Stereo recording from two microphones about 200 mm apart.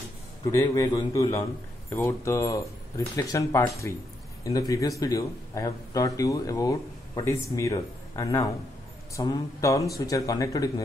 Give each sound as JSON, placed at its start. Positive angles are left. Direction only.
{"t": 0.5, "sound": "speech", "side_deg": 15}